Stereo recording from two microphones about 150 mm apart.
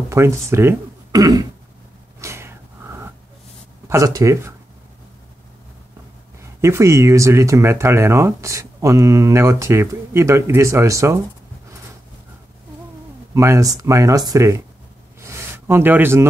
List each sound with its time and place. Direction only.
0.1 s speech: 20° right (ahead or behind)
2.1 s a sound: 20° right (ahead or behind)
3.9 s speech: 20° right (ahead or behind)
6.6 s speech: 20° right (ahead or behind)
13.3 s speech: 20° right (ahead or behind)
15.1 s a sound: 20° right (ahead or behind)